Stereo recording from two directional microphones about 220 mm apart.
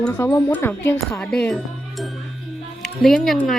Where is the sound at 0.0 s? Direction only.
10° left (ahead or behind).